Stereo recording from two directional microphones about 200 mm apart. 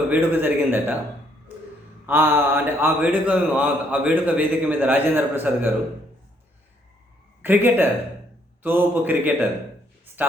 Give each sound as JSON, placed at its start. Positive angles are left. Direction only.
{"t": 0.1, "sound": "a man's voice", "side_deg": -10}
{"t": 2.0, "sound": "a man's voice", "side_deg": -10}
{"t": 7.4, "sound": "a man's voice", "side_deg": -10}